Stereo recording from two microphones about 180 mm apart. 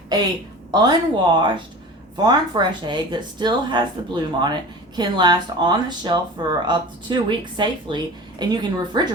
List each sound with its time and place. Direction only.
0.7 s speech: 25° right (ahead or behind)